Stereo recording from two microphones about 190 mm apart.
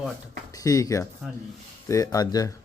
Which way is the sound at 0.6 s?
20° left (ahead or behind).